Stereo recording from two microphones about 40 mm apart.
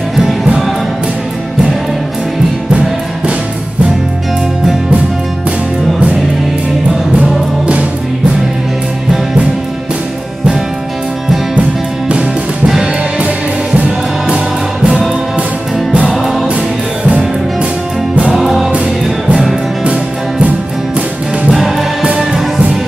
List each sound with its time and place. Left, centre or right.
0.1 s music: centre
12.2 s music: centre
16.1 s music: centre
16.4 s music: right
18.3 s music: centre
19.8 s music: right
21.5 s music: centre